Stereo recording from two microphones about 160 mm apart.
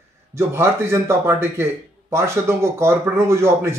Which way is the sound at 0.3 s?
15° right (ahead or behind).